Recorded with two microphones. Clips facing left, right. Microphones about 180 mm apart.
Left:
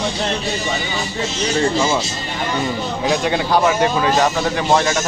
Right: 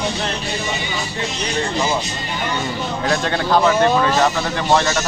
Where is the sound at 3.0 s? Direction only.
10° left (ahead or behind).